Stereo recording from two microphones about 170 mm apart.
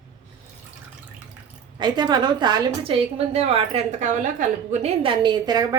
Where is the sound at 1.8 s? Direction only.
25° right (ahead or behind).